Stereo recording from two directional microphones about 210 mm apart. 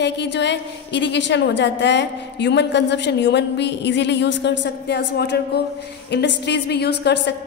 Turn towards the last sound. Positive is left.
turn(degrees=50)  # may be behind; listen again after turning